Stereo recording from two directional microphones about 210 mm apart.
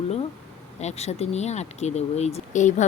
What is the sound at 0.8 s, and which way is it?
Speech, 30° left (ahead or behind).